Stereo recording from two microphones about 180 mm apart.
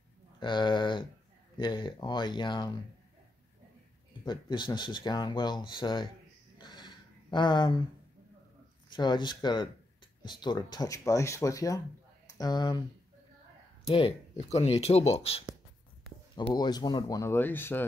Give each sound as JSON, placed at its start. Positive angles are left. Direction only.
{"t": 0.4, "sound": "speech", "side_deg": 25}
{"t": 4.2, "sound": "speech", "side_deg": 25}
{"t": 6.6, "sound": "a sound", "side_deg": 25}
{"t": 8.9, "sound": "speech", "side_deg": 25}
{"t": 13.8, "sound": "speech", "side_deg": 35}
{"t": 16.3, "sound": "speech", "side_deg": 25}